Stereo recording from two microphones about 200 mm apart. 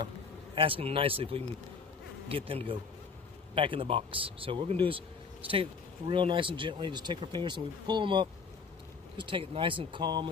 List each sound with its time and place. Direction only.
0.6 s speech: 25° right (ahead or behind)